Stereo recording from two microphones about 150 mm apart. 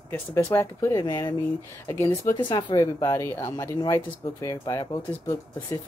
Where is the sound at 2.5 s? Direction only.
35° left (ahead or behind).